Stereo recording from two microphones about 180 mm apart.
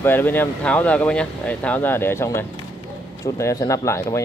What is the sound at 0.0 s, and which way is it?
Speech, 10° left (ahead or behind).